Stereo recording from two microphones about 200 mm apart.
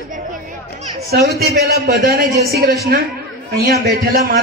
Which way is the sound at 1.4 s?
50° right (ahead or behind).